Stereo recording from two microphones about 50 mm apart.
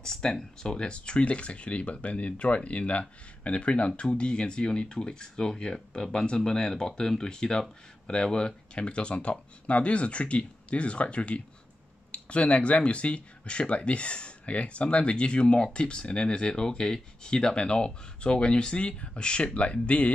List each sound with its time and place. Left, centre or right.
0.0 s speech: centre